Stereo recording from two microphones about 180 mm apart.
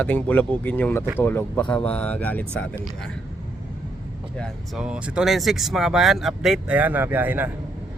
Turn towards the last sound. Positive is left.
turn(degrees=-10)  # may be behind; listen again after turning